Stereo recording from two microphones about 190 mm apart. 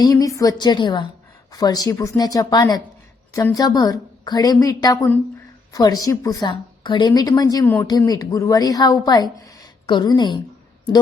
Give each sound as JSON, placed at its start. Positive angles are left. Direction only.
{"t": 0.0, "sound": "a woman's voice", "side_deg": 20}